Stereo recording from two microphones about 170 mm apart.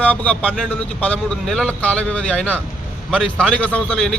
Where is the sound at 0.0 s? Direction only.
10° left (ahead or behind).